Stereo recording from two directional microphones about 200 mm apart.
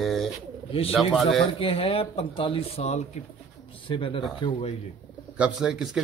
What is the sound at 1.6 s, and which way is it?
Speech, 25° left (ahead or behind).